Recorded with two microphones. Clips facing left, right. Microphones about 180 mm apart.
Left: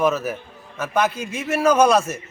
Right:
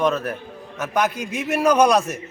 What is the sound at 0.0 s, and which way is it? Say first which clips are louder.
Speech: left 1 dB; 5° left (ahead or behind).